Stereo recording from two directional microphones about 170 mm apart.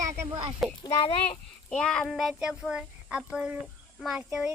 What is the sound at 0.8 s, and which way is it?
Speech, 25° left (ahead or behind).